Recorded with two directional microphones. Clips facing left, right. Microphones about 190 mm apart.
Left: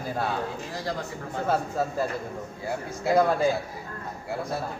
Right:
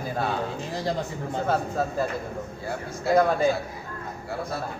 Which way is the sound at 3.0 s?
5° left (ahead or behind).